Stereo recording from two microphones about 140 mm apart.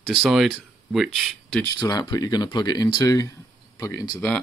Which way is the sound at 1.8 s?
30° left (ahead or behind).